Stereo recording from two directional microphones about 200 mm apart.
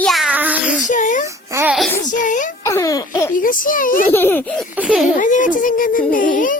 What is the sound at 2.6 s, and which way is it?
Speech, 15° left (ahead or behind).